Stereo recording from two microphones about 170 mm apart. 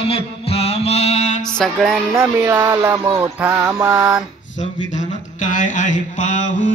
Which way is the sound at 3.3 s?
10° right (ahead or behind).